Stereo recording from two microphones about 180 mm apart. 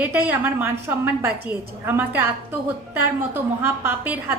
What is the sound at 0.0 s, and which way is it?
A woman's voice, 10° right (ahead or behind).